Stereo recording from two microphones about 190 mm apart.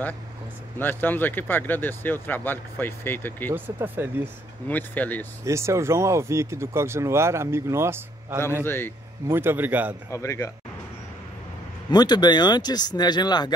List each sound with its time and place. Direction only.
0.7 s speech: 10° left (ahead or behind)
3.5 s speech: 10° right (ahead or behind)
4.6 s speech: 10° left (ahead or behind)
5.4 s speech: 15° right (ahead or behind)
8.6 s speech: 10° left (ahead or behind)
9.3 s speech: 10° right (ahead or behind)
10.1 s speech: 15° left (ahead or behind)
11.9 s speech: 20° left (ahead or behind)